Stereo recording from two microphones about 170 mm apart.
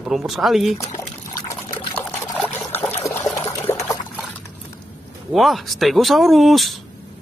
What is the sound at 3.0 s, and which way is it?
Water, 15° left (ahead or behind).